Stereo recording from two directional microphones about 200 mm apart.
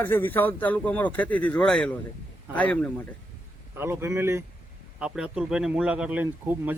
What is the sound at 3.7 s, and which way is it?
Speech, 10° right (ahead or behind).